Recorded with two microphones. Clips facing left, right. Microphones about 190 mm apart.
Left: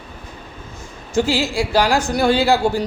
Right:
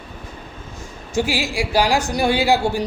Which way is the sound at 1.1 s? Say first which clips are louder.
Left 3 dB; 15° right (ahead or behind).